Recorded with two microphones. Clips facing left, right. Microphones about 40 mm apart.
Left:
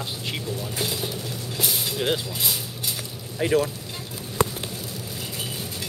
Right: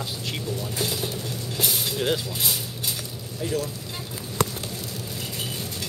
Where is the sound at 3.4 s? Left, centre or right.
Left.